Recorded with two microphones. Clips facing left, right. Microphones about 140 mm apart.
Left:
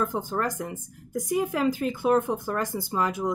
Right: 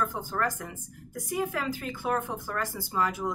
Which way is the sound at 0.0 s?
20° left (ahead or behind).